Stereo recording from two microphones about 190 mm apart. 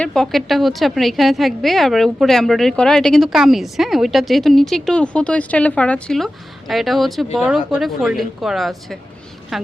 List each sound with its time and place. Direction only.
0.0 s a woman's voice: 5° left (ahead or behind)